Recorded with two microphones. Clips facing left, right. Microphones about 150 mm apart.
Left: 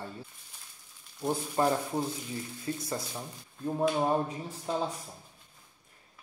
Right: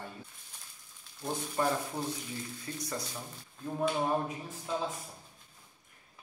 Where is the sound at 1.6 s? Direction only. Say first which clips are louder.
Left 4 dB; 35° left (ahead or behind).